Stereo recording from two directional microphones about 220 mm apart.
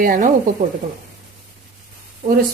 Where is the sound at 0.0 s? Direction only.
40° right (ahead or behind).